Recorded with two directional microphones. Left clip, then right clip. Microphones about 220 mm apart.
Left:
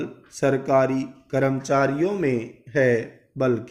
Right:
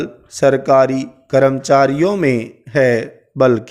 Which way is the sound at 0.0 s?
45° right (ahead or behind).